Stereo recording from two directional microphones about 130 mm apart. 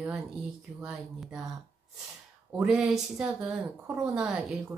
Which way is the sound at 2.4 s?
10° right (ahead or behind).